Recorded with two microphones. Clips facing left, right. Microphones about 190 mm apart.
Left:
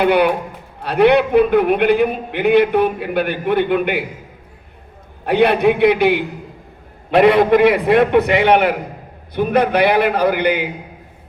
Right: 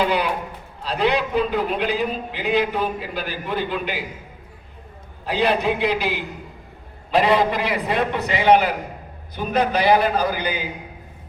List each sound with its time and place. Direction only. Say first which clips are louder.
0.0 s a man's voice: left 7 dB; 60° left (ahead or behind)
5.2 s a man's voice: left 7 dB; 60° left (ahead or behind)